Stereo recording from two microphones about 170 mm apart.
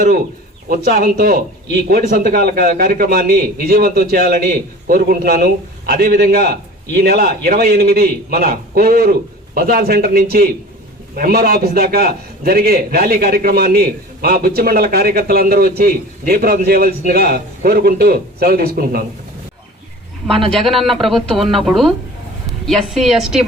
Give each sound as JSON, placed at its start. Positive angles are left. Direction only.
{"t": 0.7, "sound": "a man's voice", "side_deg": -55}
{"t": 20.5, "sound": "speech", "side_deg": 0}